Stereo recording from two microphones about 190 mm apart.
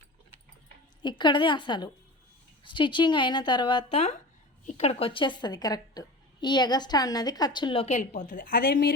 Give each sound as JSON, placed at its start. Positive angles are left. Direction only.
{"t": 1.0, "sound": "a woman's voice", "side_deg": 25}